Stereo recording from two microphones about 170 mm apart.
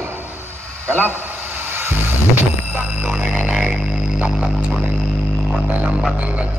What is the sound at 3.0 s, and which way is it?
Music, 5° right (ahead or behind).